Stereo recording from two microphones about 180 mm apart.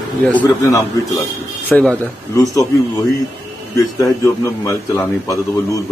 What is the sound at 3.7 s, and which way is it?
A man's voice, 15° left (ahead or behind).